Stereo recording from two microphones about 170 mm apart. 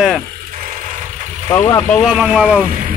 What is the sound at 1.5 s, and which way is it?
Speech, 15° left (ahead or behind).